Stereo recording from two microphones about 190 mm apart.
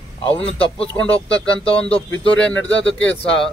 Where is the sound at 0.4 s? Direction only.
5° left (ahead or behind).